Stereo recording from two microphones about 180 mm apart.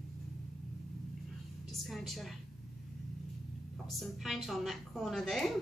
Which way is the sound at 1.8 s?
Centre (ahead or behind).